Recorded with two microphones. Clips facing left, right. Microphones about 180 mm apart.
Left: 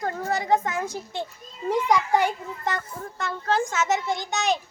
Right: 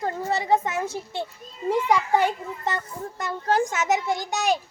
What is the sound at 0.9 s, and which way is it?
A child's voice, 15° left (ahead or behind).